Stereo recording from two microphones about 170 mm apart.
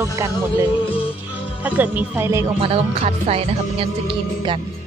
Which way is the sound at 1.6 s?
10° right (ahead or behind).